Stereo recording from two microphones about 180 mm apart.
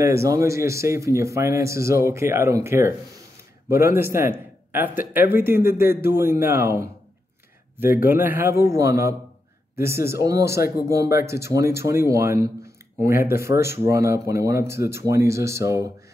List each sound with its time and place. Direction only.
0.0 s speech: 15° right (ahead or behind)